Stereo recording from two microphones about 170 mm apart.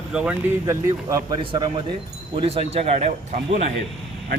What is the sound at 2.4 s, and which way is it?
Speech, 35° right (ahead or behind).